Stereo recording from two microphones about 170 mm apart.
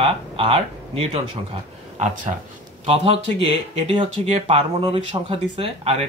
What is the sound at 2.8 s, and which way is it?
Speech, 35° right (ahead or behind).